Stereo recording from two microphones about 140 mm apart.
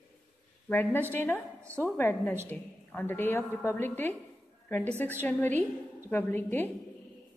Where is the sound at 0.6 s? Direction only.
10° left (ahead or behind).